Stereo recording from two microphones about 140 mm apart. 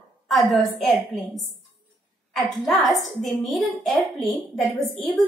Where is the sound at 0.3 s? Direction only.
Centre (ahead or behind).